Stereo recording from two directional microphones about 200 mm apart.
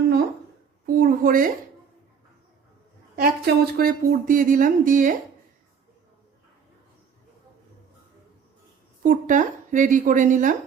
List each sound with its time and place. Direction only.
0.9 s a sound: 45° right (ahead or behind)
3.2 s speech: 50° right (ahead or behind)
9.0 s a woman's voice: 40° right (ahead or behind)